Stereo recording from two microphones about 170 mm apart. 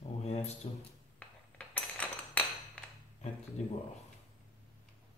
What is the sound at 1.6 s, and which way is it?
Cutlery, 5° left (ahead or behind).